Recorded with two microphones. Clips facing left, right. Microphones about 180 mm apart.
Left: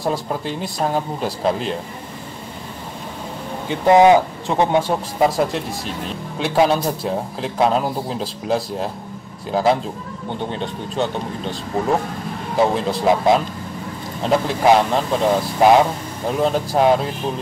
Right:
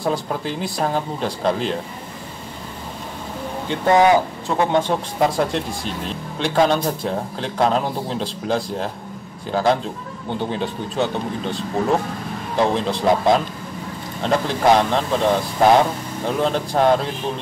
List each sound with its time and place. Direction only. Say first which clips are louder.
0.0 s a man's voice: even; centre (ahead or behind)
3.8 s speech: left 3 dB; 20° left (ahead or behind)
4.7 s a man's voice: left 1 dB; 5° left (ahead or behind)